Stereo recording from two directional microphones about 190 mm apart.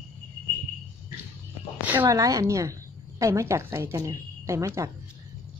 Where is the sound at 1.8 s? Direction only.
15° right (ahead or behind).